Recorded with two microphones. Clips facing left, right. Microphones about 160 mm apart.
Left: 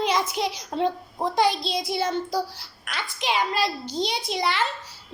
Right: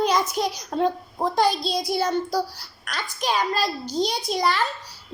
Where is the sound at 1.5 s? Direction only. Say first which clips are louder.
Right 2 dB; 25° left (ahead or behind).